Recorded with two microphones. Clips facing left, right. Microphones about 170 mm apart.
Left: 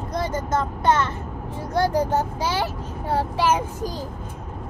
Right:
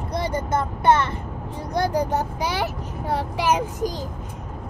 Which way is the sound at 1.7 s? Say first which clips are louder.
Left 1 dB; 15° right (ahead or behind).